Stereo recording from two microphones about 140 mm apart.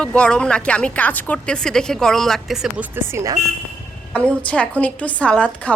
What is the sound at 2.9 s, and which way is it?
Speech, 20° right (ahead or behind).